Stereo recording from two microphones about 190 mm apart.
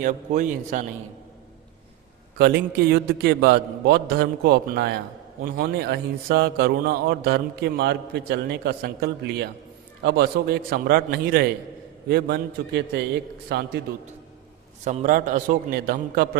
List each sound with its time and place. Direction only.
0.0 s a man's voice: 40° right (ahead or behind)
2.9 s a man's voice: 55° right (ahead or behind)
14.8 s a man's voice: 40° right (ahead or behind)